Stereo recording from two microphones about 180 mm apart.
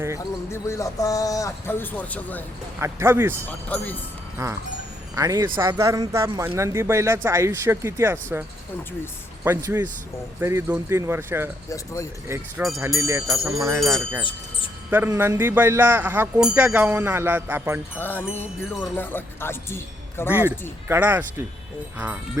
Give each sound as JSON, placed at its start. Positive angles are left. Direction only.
{"t": 0.2, "sound": "speech", "side_deg": 15}
{"t": 2.8, "sound": "speech", "side_deg": -15}
{"t": 3.7, "sound": "speech", "side_deg": 10}
{"t": 4.4, "sound": "speech", "side_deg": -20}
{"t": 13.7, "sound": "wind chime", "side_deg": 0}
{"t": 14.8, "sound": "speech", "side_deg": -10}
{"t": 17.9, "sound": "speech", "side_deg": 10}
{"t": 20.3, "sound": "speech", "side_deg": -10}